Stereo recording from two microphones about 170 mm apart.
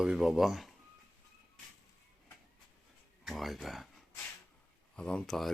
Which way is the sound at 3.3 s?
Centre (ahead or behind).